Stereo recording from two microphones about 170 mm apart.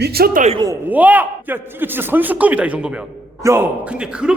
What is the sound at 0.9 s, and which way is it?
A man's voice, 10° right (ahead or behind).